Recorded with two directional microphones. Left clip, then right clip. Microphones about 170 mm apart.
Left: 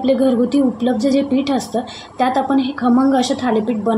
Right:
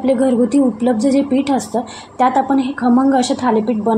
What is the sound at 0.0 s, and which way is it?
A woman's voice, 10° right (ahead or behind).